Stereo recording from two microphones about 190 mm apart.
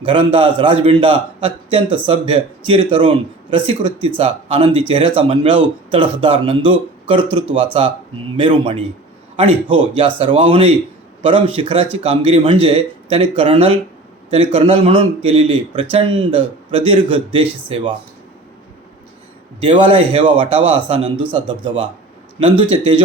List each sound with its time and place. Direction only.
0.0 s speech: 25° right (ahead or behind)
19.6 s speech: 30° right (ahead or behind)